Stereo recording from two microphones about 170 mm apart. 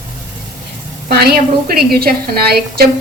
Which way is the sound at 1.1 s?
65° right (ahead or behind).